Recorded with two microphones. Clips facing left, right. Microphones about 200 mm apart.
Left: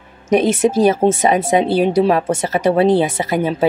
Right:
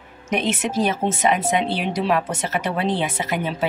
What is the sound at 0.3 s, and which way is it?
Speech, 35° left (ahead or behind).